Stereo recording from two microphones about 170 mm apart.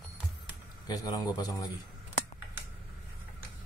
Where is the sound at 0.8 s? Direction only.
20° left (ahead or behind).